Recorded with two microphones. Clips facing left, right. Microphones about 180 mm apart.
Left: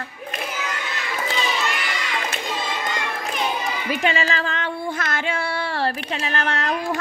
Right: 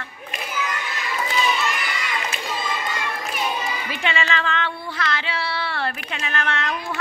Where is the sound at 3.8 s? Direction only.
40° left (ahead or behind).